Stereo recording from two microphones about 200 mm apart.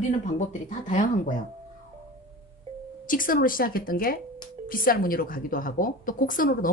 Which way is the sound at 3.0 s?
45° left (ahead or behind).